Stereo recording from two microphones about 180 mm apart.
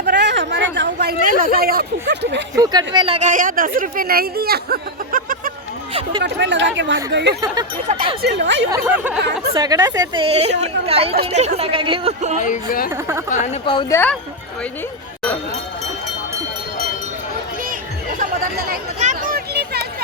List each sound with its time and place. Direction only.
0.0 s a sound: 70° right (ahead or behind)
2.6 s a woman's voice: 25° right (ahead or behind)
3.2 s speech: 45° right (ahead or behind)
6.2 s speech: 80° right
7.4 s a woman's voice: 20° right (ahead or behind)
7.9 s a woman's voice: 40° right (ahead or behind)
8.2 s speech: 75° right (ahead or behind)
9.6 s a woman's voice: 20° right (ahead or behind); by 12.4 s 35° right (ahead or behind)
12.4 s a woman's voice: 50° left (ahead or behind)
12.9 s a woman's voice: 15° right (ahead or behind)
13.9 s speech: 10° left (ahead or behind)
18.2 s chatter: 55° right (ahead or behind)
18.9 s a sound: 45° right (ahead or behind); by 19.9 s 60° right (ahead or behind)